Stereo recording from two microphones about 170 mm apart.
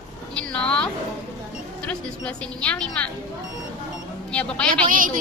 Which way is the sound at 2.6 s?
5° left (ahead or behind).